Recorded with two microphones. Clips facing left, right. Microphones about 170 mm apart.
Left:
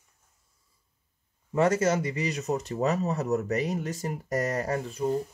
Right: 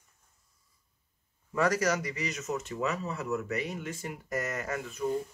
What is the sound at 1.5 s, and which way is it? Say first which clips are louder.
Speech: left 4 dB; 25° left (ahead or behind).